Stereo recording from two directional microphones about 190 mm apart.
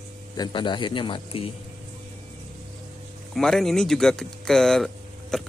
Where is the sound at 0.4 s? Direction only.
25° left (ahead or behind).